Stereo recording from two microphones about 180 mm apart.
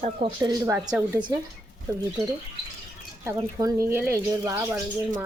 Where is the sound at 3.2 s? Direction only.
20° right (ahead or behind).